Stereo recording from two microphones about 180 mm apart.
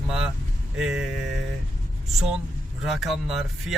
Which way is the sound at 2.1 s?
Centre (ahead or behind).